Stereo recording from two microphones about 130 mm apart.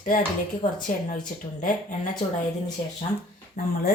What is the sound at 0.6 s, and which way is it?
Speech, 75° left (ahead or behind).